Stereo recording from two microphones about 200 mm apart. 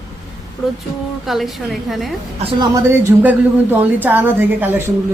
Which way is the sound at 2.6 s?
10° right (ahead or behind).